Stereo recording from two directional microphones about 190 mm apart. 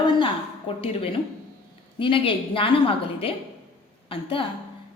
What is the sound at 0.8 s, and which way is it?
A woman's voice, 30° left (ahead or behind).